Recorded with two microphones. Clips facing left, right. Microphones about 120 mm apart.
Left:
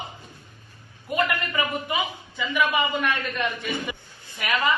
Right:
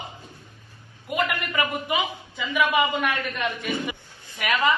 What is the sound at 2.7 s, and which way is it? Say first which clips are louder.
Speech: right 2 dB; 15° right (ahead or behind).